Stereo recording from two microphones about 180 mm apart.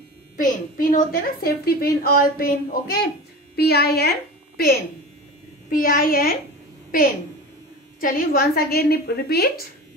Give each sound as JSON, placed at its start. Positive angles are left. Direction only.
{"t": 0.4, "sound": "a woman's voice", "side_deg": 45}
{"t": 5.7, "sound": "a child's voice", "side_deg": 50}
{"t": 8.0, "sound": "a woman's voice", "side_deg": 55}